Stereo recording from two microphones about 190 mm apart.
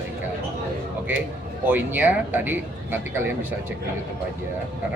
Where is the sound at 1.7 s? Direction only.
10° right (ahead or behind).